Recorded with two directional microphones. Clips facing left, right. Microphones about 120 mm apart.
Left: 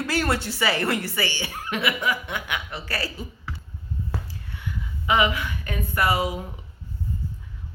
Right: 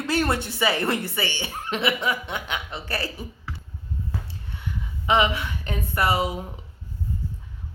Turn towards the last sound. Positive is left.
turn(degrees=-25)  # may be behind; listen again after turning